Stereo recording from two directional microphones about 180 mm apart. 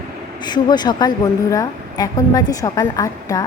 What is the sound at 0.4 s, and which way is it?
Speech, 25° left (ahead or behind).